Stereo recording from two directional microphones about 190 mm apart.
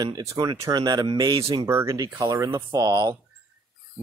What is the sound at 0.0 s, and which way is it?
Speech, 20° right (ahead or behind).